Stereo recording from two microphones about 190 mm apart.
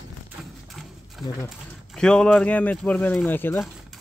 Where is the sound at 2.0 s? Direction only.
5° left (ahead or behind).